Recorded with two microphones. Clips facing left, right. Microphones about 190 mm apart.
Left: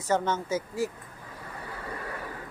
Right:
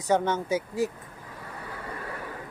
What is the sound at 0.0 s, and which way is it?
Speech, 15° right (ahead or behind).